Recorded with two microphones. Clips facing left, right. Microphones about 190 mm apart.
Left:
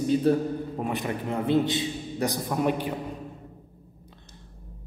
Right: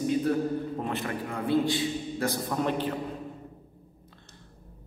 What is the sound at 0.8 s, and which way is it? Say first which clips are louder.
A man's voice: left 2 dB; 15° left (ahead or behind).